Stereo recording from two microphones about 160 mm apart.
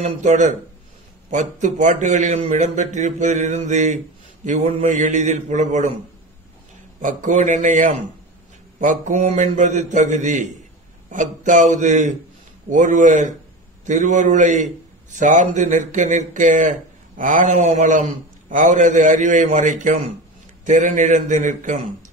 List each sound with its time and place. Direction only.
0.0 s a man's voice: 50° right (ahead or behind)
7.0 s a man's voice: 55° right (ahead or behind)